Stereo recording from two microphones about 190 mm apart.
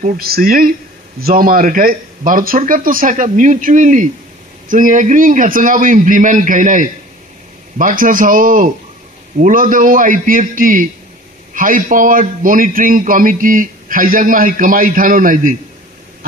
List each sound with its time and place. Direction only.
0.0 s a man's voice: 50° right (ahead or behind)